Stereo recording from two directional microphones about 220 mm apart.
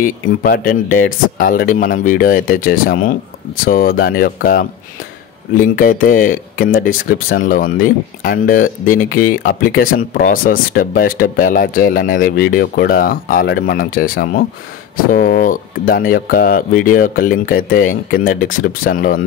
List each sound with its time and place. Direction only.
0.0 s speech: 40° left (ahead or behind)